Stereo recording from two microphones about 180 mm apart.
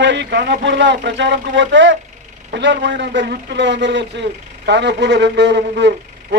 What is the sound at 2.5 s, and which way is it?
A man's voice, 75° right (ahead or behind).